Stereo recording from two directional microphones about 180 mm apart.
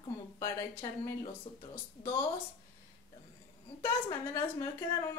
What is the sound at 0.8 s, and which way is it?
Speech, 20° left (ahead or behind).